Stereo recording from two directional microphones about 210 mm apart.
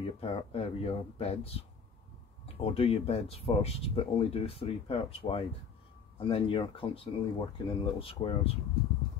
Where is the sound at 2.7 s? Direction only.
25° left (ahead or behind).